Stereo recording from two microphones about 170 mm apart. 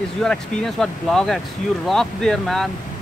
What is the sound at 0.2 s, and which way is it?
Speech, 5° left (ahead or behind).